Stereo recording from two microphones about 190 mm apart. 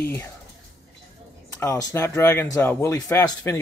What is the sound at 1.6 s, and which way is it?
Speech, 15° left (ahead or behind).